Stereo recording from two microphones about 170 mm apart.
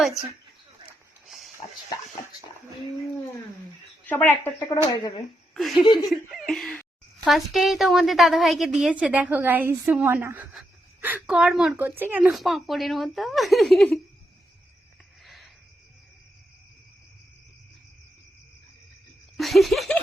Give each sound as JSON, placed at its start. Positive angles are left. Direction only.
{"t": 4.0, "sound": "speech", "side_deg": 10}
{"t": 5.5, "sound": "a woman's voice", "side_deg": 0}
{"t": 5.8, "sound": "speech", "side_deg": 25}
{"t": 6.1, "sound": "a woman's voice", "side_deg": 0}
{"t": 15.2, "sound": "cricket", "side_deg": 0}
{"t": 19.4, "sound": "a woman's voice", "side_deg": 0}